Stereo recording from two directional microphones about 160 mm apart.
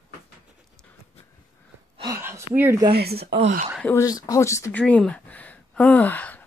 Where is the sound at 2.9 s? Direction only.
80° right.